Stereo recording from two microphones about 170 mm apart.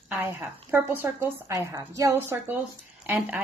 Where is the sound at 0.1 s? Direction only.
10° right (ahead or behind).